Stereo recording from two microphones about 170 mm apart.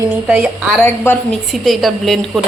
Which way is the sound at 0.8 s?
15° left (ahead or behind).